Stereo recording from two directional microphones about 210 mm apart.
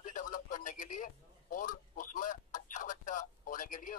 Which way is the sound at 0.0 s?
40° left (ahead or behind).